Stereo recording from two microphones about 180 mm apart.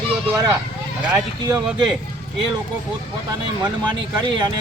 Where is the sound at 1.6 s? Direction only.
5° right (ahead or behind).